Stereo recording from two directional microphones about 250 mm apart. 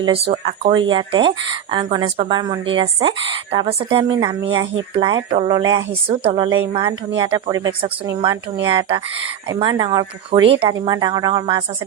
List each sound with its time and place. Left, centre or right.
0.0 s speech: right